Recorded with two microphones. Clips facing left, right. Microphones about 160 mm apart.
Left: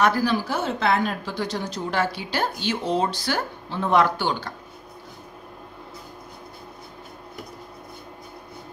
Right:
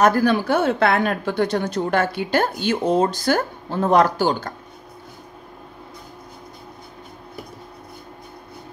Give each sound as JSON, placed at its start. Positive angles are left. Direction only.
{"t": 0.0, "sound": "a woman's voice", "side_deg": -55}